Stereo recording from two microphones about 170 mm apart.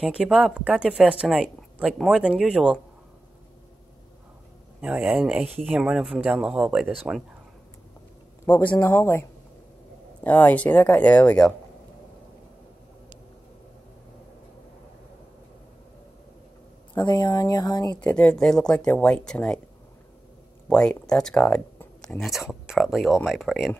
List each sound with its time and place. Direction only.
0.0 s speech: centre (ahead or behind)
4.8 s speech: 10° right (ahead or behind)
8.5 s speech: 15° left (ahead or behind)
10.2 s speech: 10° left (ahead or behind)
16.9 s speech: 25° left (ahead or behind)
18.0 s speech: 5° left (ahead or behind)
20.6 s speech: 5° left (ahead or behind)